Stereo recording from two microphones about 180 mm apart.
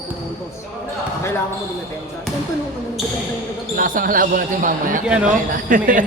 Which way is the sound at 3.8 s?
50° right (ahead or behind).